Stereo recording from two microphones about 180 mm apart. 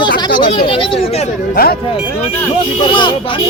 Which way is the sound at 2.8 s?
25° left (ahead or behind).